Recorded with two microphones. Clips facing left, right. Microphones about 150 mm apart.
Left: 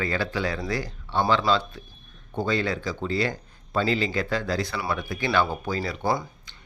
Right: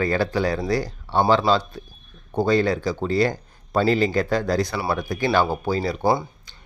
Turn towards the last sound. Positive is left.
turn(degrees=-25)  # may be behind; listen again after turning